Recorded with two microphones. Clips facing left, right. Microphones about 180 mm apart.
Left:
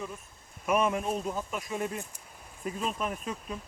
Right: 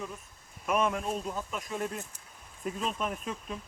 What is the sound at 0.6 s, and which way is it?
Speech, 5° left (ahead or behind).